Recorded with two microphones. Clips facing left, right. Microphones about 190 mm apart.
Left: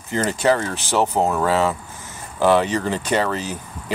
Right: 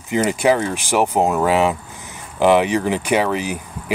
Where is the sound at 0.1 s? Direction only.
15° right (ahead or behind).